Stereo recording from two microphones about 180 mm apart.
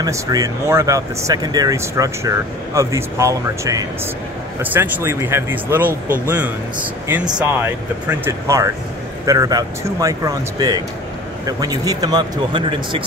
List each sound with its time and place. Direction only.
0.0 s speech: 20° right (ahead or behind)
5.9 s speech: 50° right (ahead or behind)
6.2 s speech: 10° right (ahead or behind); by 13.0 s 30° right (ahead or behind)